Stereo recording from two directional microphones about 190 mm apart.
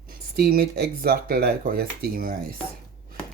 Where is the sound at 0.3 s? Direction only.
50° right (ahead or behind).